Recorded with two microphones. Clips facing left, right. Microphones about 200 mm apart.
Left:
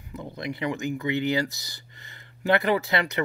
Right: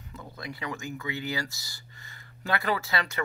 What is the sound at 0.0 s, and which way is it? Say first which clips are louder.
Speech: left 7 dB; 20° left (ahead or behind).